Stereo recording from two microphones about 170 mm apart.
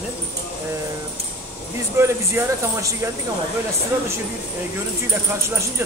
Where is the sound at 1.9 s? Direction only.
15° right (ahead or behind).